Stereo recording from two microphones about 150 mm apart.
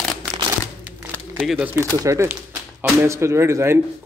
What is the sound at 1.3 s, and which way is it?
Speech, 5° right (ahead or behind).